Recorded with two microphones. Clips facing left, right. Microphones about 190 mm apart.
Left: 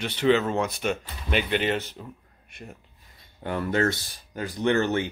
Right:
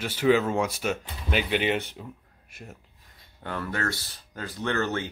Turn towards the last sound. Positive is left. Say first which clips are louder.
# left 5 dB
turn(degrees=15)  # may be behind; listen again after turning